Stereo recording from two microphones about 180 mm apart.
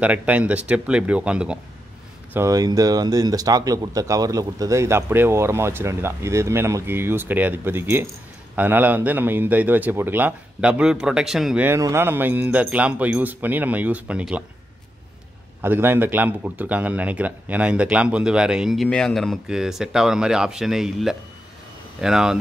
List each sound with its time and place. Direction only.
0.0 s a man's voice: 5° right (ahead or behind)
2.3 s a man's voice: 15° right (ahead or behind)
15.6 s speech: 10° right (ahead or behind)